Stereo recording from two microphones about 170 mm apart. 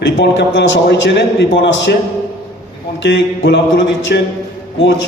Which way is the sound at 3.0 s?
90° left.